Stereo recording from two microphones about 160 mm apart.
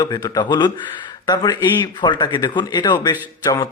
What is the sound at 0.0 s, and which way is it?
Speech, 25° left (ahead or behind).